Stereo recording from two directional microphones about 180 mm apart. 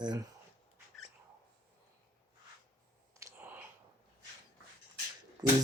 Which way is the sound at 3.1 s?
15° right (ahead or behind).